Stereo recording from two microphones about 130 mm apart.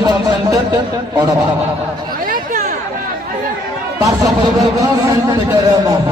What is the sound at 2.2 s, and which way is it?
Chatter, 90° right.